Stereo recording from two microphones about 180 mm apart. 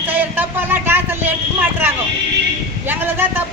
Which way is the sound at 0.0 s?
10° right (ahead or behind).